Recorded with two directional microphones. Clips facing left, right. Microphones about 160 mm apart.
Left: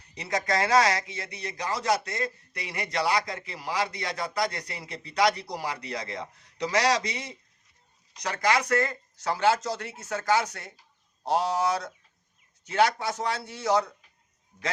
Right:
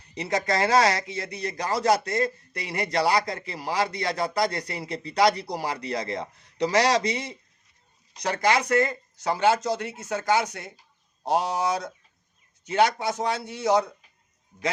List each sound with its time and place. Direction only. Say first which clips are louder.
0.1 s a man's voice: right 2 dB; 30° right (ahead or behind)